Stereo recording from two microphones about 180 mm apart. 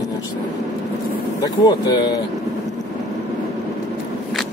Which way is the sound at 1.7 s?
25° left (ahead or behind).